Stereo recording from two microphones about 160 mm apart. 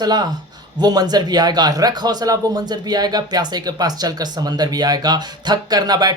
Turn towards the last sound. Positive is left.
turn(degrees=-25)  # may be behind; listen again after turning